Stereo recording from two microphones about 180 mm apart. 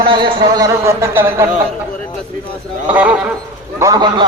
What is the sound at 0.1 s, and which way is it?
A man's voice, 25° right (ahead or behind).